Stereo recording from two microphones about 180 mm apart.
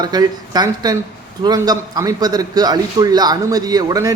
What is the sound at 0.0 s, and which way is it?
A man's voice, 20° right (ahead or behind).